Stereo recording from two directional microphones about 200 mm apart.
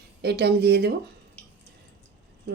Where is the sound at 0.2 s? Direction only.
55° right (ahead or behind).